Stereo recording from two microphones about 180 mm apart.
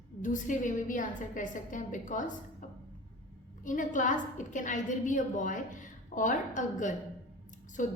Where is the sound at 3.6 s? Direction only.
45° left (ahead or behind).